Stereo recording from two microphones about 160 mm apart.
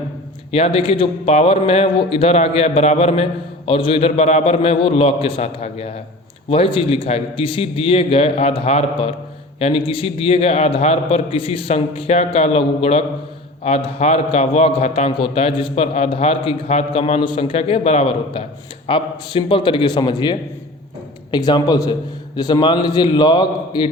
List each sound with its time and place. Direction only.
0.5 s a man's voice: 40° left (ahead or behind)